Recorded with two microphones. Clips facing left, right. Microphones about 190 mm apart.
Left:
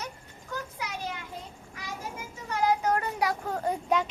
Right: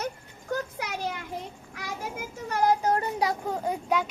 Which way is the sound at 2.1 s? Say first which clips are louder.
Right 4 dB; 55° right (ahead or behind).